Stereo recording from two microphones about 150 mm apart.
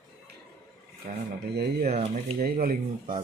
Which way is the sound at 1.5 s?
90° right.